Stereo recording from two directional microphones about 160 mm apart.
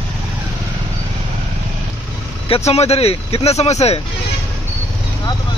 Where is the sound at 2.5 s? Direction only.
40° left (ahead or behind).